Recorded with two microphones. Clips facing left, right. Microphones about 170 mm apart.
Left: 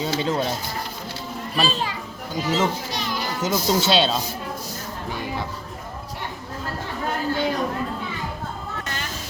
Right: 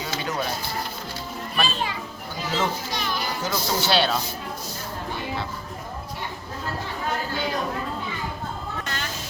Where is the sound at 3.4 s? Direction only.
20° left (ahead or behind).